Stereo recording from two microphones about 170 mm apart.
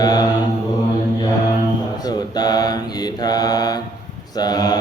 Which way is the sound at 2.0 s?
25° left (ahead or behind).